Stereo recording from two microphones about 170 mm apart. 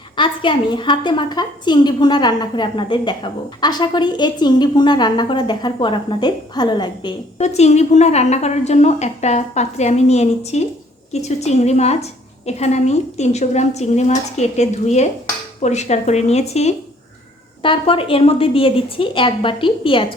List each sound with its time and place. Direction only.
0.2 s a woman's voice: 30° left (ahead or behind)
7.3 s a woman's voice: 40° left (ahead or behind)